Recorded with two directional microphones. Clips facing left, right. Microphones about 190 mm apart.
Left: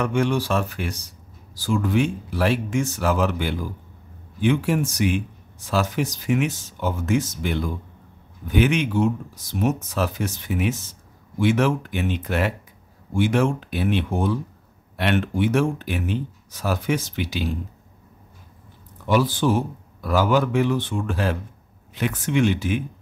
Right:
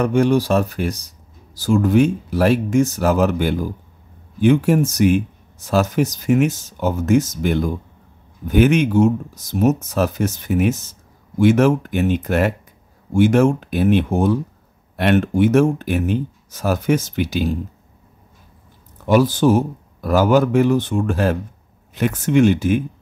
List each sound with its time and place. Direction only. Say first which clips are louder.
0.0 s speech: right 6 dB; 40° right (ahead or behind)
19.0 s speech: right 6 dB; 45° right (ahead or behind)